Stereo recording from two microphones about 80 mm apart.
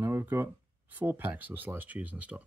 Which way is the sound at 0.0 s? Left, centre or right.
Right.